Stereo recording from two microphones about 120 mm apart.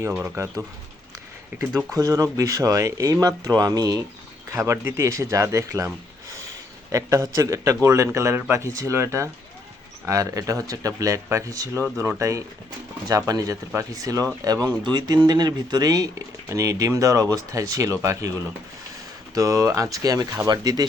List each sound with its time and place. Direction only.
0.2 s speech: 20° right (ahead or behind)
1.9 s speech: 30° right (ahead or behind)
6.9 s speech: 25° right (ahead or behind)
19.3 s speech: 30° right (ahead or behind)